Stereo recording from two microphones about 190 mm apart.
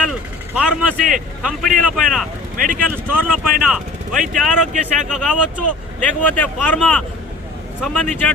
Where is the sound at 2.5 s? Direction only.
45° right (ahead or behind).